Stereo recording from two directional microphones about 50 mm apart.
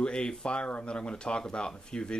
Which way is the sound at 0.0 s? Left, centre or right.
Centre.